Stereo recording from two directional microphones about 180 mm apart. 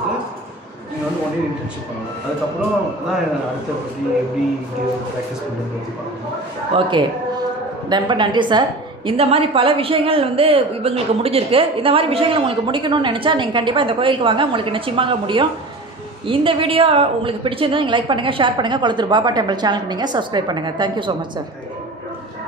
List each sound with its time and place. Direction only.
6.7 s a woman's voice: 25° right (ahead or behind)